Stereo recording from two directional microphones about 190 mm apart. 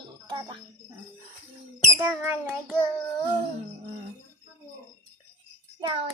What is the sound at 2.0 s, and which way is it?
Child singing, 10° right (ahead or behind).